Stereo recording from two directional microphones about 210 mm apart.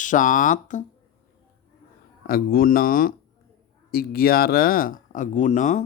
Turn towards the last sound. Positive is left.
turn(degrees=35)  # may be behind; listen again after turning